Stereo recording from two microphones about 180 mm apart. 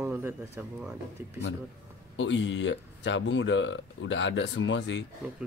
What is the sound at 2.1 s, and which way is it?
Speech, 90° left.